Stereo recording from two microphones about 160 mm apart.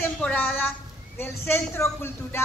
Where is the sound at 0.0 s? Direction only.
10° left (ahead or behind).